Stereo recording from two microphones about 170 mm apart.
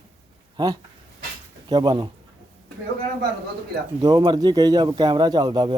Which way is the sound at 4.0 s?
25° right (ahead or behind).